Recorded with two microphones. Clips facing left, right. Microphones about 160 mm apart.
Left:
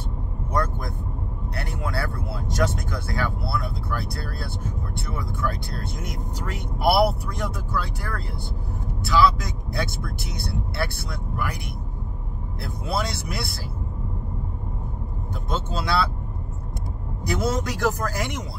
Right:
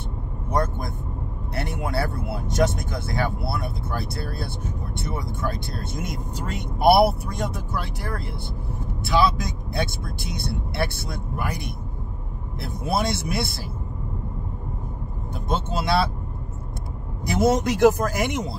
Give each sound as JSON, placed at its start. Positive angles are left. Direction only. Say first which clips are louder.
{"t": 1.5, "sound": "speech", "louder": "right 3 dB", "side_deg": -25}
{"t": 12.5, "sound": "speech", "louder": "right 3 dB", "side_deg": -25}
{"t": 15.5, "sound": "speech", "louder": "right 3 dB", "side_deg": -20}
{"t": 17.2, "sound": "speech", "louder": "right 5 dB", "side_deg": -20}